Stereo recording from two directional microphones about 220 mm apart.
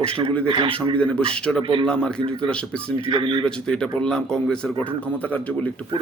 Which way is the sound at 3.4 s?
5° left (ahead or behind).